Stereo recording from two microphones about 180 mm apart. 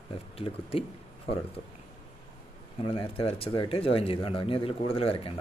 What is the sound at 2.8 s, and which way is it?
Speech, 30° left (ahead or behind).